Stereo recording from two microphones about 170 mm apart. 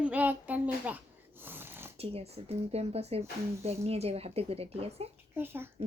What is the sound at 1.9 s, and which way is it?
Speech, 35° right (ahead or behind).